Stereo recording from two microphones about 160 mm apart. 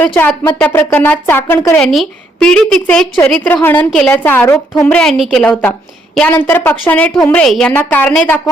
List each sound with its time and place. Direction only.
0.0 s a woman's voice: 10° left (ahead or behind)
1.9 s a woman's voice: centre (ahead or behind)
7.1 s a woman's voice: 25° left (ahead or behind)
7.3 s a woman's voice: 5° left (ahead or behind)